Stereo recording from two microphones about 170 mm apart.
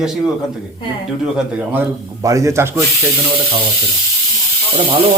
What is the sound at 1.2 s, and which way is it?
Speech, 10° right (ahead or behind).